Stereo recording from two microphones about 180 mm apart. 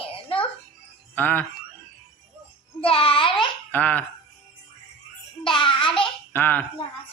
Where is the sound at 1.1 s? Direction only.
10° left (ahead or behind).